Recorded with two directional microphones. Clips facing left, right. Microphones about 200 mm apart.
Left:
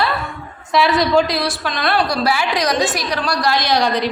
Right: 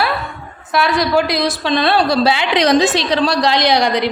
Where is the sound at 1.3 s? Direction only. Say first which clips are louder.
Right 5 dB; 20° right (ahead or behind).